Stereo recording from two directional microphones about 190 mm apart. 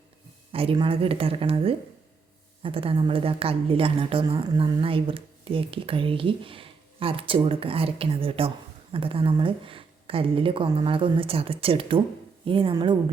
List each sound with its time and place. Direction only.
0.5 s a woman's voice: 30° right (ahead or behind)